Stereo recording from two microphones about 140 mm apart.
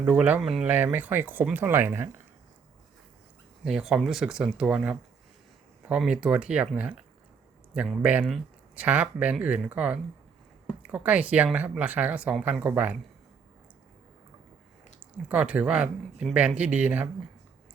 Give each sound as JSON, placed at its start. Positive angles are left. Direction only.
{"t": 0.0, "sound": "speech", "side_deg": -10}
{"t": 3.6, "sound": "speech", "side_deg": -5}
{"t": 8.0, "sound": "speech", "side_deg": -10}
{"t": 15.3, "sound": "speech", "side_deg": -10}